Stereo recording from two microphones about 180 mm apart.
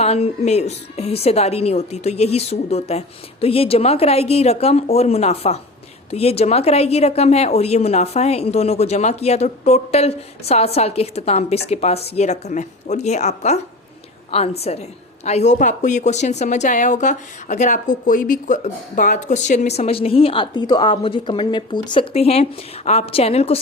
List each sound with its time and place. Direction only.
0.0 s a woman's voice: 35° left (ahead or behind)